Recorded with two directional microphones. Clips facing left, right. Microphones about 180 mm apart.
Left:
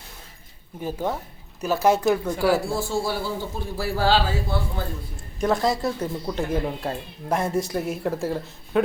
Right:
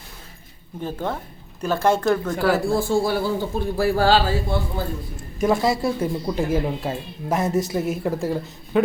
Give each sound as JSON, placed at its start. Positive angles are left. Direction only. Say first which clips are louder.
{"t": 0.8, "sound": "speech", "louder": "even", "side_deg": 10}
{"t": 2.6, "sound": "a man's voice", "louder": "right 5 dB", "side_deg": -55}
{"t": 4.5, "sound": "a man's voice", "louder": "right 3 dB", "side_deg": -20}
{"t": 5.4, "sound": "speech", "louder": "right 2 dB", "side_deg": -5}